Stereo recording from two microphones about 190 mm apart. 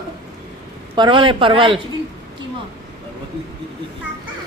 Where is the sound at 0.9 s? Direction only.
25° right (ahead or behind).